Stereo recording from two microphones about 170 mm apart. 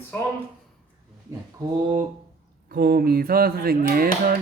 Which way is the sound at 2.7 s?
60° right (ahead or behind).